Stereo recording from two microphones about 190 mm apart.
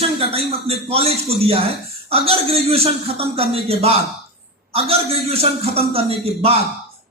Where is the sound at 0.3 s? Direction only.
30° right (ahead or behind).